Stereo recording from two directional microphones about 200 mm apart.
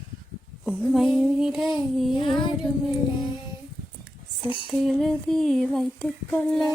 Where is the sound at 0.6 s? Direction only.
Centre (ahead or behind).